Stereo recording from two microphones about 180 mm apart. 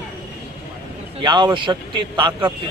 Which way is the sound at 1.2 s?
25° right (ahead or behind).